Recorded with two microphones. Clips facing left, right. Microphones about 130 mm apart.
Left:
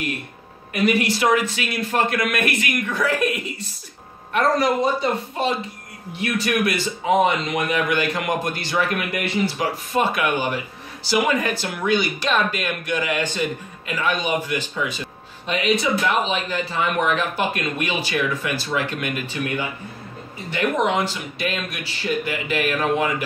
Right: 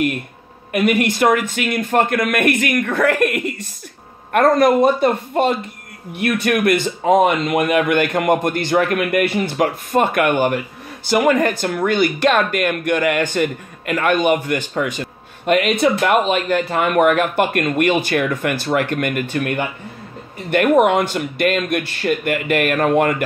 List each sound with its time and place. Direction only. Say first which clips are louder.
0.7 s speech: right 4 dB; 55° right (ahead or behind)